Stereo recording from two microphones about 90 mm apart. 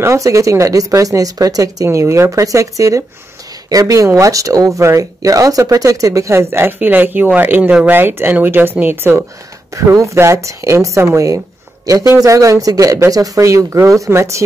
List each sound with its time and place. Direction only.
0.0 s speech: 35° right (ahead or behind)
9.8 s speech: 35° right (ahead or behind)